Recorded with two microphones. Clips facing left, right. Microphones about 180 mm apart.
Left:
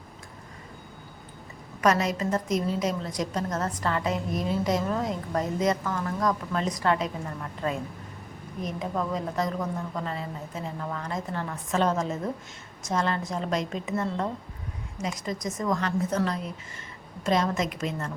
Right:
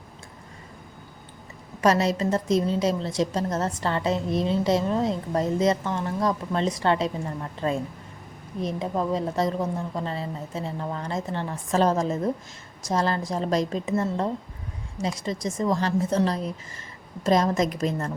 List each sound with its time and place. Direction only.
1.8 s a woman's voice: 30° right (ahead or behind)